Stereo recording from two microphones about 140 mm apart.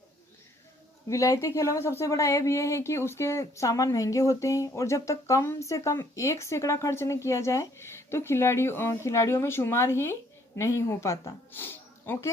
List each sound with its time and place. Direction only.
1.1 s speech: 20° left (ahead or behind)